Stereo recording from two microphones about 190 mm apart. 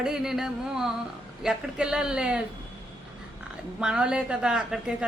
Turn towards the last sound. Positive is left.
turn(degrees=-5)  # may be behind; listen again after turning